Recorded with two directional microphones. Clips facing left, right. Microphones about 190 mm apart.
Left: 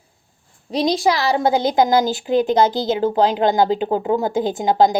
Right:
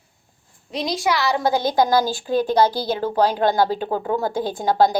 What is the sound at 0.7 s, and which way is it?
A woman's voice, 35° left (ahead or behind).